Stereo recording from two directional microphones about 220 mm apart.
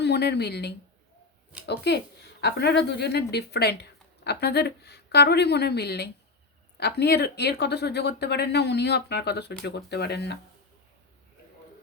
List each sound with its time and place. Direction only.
0.0 s speech: 50° left (ahead or behind)